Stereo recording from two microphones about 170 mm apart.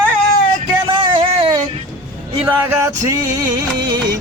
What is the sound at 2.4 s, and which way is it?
Music, 15° right (ahead or behind).